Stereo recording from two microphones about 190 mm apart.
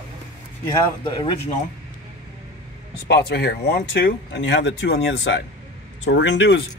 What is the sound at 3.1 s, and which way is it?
Speech, 60° left (ahead or behind).